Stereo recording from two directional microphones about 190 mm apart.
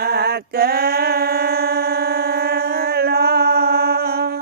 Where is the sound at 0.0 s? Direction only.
55° right (ahead or behind).